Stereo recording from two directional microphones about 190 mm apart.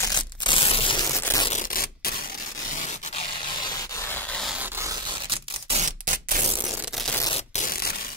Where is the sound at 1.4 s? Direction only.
45° left (ahead or behind); by 6.5 s 45° right (ahead or behind).